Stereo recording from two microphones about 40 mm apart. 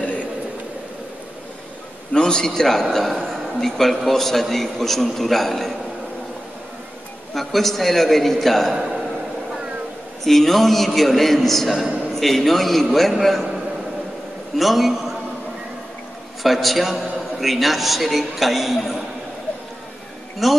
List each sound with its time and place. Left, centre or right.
0.0 s a sound: left
2.1 s a man's voice: centre
7.3 s a man's voice: centre
10.2 s a man's voice: centre
14.6 s a man's voice: centre
16.4 s a man's voice: centre
20.4 s a man's voice: centre